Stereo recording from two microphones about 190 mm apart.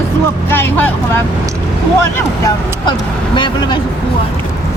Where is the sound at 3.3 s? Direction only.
25° left (ahead or behind).